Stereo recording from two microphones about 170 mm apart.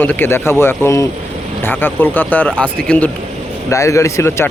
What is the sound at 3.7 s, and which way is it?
Speech, 20° left (ahead or behind).